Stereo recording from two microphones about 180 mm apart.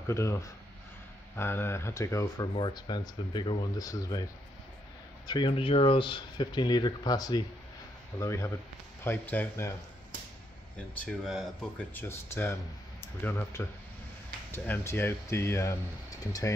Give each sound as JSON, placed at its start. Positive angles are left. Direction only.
{"t": 0.0, "sound": "speech", "side_deg": 15}
{"t": 11.0, "sound": "speech", "side_deg": 0}